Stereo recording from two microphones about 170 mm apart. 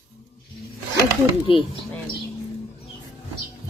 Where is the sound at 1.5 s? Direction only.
30° left (ahead or behind).